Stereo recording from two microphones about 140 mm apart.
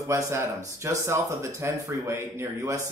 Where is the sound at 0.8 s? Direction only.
20° right (ahead or behind).